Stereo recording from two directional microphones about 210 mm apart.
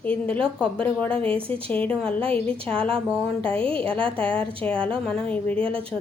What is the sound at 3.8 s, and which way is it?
Speech, 25° right (ahead or behind).